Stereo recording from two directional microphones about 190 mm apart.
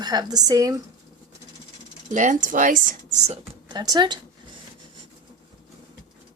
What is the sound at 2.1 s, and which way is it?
Speech, 40° right (ahead or behind).